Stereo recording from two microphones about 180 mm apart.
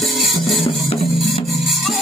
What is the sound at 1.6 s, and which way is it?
Rub, centre (ahead or behind).